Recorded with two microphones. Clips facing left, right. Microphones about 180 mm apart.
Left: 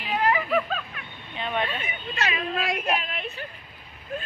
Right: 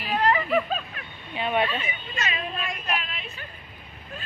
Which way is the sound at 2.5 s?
80° left.